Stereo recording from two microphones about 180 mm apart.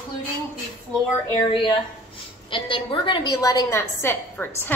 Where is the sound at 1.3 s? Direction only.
25° left (ahead or behind).